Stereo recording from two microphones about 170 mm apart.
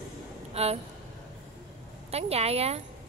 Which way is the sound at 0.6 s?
40° right (ahead or behind).